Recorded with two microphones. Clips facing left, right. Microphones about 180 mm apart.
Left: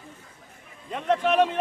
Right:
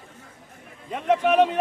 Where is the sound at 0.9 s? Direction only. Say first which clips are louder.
Right 3 dB; 10° right (ahead or behind).